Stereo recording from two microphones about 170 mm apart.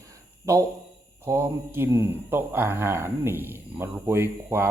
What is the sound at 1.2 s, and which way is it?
Speech, 15° right (ahead or behind).